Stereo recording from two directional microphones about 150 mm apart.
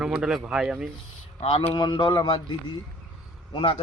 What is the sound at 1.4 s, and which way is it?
Speech, 40° left (ahead or behind).